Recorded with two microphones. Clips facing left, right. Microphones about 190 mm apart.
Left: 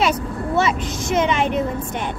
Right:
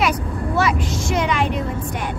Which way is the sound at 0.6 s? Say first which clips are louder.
Even; 25° left (ahead or behind).